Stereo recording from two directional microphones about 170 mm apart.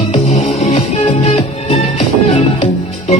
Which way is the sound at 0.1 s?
45° left (ahead or behind).